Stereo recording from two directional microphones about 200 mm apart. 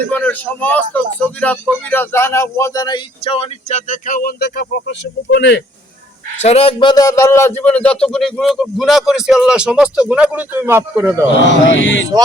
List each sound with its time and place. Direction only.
0.1 s a man's voice: 10° left (ahead or behind); by 5.6 s 55° left (ahead or behind)
6.4 s a man's voice: 30° left (ahead or behind); by 11.3 s 15° right (ahead or behind)
11.7 s mantra: 70° left (ahead or behind)